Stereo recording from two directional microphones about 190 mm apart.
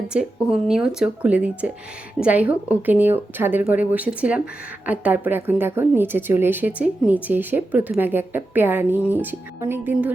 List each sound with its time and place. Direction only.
0.1 s speech: 5° right (ahead or behind)